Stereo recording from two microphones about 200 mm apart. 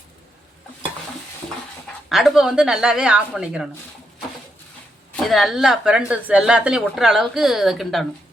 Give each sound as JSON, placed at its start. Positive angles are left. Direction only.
{"t": 2.0, "sound": "a woman's voice", "side_deg": 0}
{"t": 5.1, "sound": "a woman's voice", "side_deg": 0}